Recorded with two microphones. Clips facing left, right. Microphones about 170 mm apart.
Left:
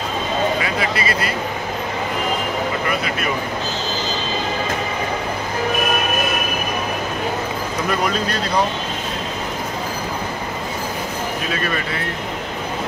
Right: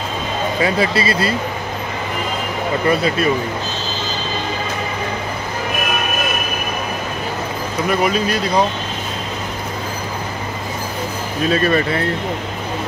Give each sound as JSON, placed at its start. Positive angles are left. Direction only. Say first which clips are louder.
{"t": 0.6, "sound": "a man's voice", "louder": "right 5 dB", "side_deg": -30}
{"t": 2.9, "sound": "a man's voice", "louder": "right 6 dB", "side_deg": -30}
{"t": 8.0, "sound": "speech", "louder": "right 4 dB", "side_deg": -10}
{"t": 11.5, "sound": "a man's voice", "louder": "right 7 dB", "side_deg": -35}